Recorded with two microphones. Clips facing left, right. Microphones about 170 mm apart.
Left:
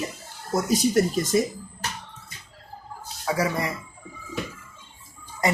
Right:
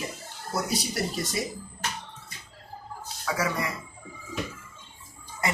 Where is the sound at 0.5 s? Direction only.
45° left (ahead or behind).